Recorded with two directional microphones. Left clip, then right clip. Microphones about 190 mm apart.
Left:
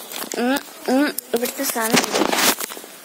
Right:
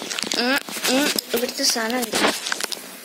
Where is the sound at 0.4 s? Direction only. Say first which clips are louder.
Left 1 dB; 40° left (ahead or behind).